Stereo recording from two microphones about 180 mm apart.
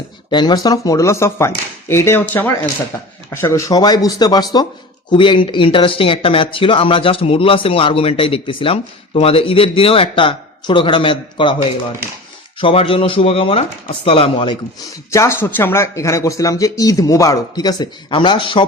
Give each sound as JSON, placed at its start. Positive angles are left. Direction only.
{"t": 0.3, "sound": "speech", "side_deg": 25}
{"t": 12.5, "sound": "speech", "side_deg": 30}
{"t": 15.1, "sound": "speech", "side_deg": 15}